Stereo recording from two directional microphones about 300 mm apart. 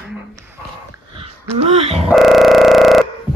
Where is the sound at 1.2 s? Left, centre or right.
Centre.